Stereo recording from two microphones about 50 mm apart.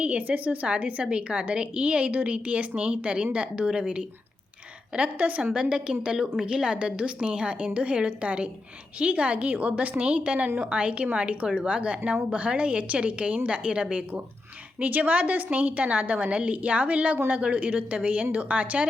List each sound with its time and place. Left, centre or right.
0.0 s a woman's voice: right